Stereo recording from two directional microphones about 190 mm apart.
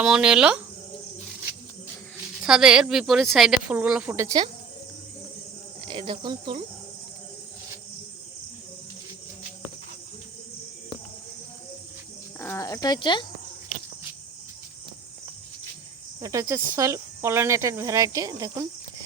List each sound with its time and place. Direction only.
0.0 s speech: 5° right (ahead or behind)
2.1 s speech: 5° right (ahead or behind)
5.8 s speech: 25° right (ahead or behind)
12.4 s speech: 15° left (ahead or behind)
16.2 s speech: 15° right (ahead or behind)